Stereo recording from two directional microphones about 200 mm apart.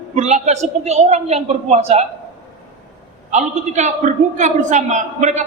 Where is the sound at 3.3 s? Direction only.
35° right (ahead or behind).